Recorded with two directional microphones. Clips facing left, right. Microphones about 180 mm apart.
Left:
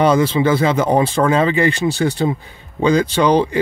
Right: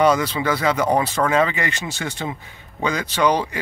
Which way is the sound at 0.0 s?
30° left (ahead or behind).